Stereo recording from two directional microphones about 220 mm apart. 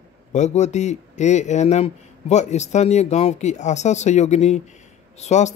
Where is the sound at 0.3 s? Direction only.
30° left (ahead or behind).